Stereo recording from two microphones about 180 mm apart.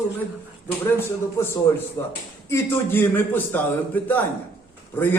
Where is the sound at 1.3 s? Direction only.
15° left (ahead or behind).